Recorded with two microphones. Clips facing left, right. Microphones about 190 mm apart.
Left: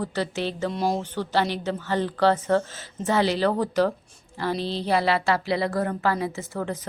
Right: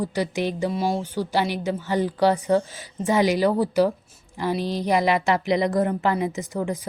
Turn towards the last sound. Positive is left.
turn(degrees=-15)  # may be behind; listen again after turning